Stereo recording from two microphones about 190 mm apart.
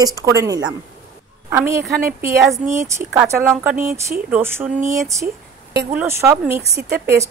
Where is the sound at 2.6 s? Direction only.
40° right (ahead or behind).